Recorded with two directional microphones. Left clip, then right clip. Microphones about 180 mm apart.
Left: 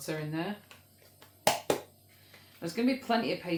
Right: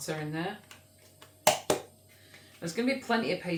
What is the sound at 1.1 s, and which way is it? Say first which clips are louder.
Finger snapping: right 3 dB; 5° right (ahead or behind).